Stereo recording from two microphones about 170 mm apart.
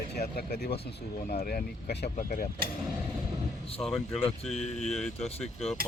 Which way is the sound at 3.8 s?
5° left (ahead or behind).